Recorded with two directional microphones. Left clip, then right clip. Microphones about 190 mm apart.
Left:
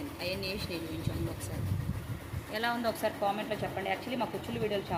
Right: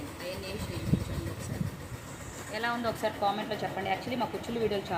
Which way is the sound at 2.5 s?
20° left (ahead or behind).